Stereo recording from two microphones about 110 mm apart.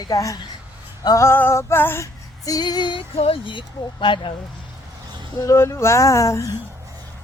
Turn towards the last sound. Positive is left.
turn(degrees=30)  # may be behind; listen again after turning